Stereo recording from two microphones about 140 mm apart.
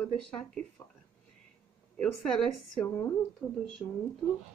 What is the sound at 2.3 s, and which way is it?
Speech, 5° left (ahead or behind).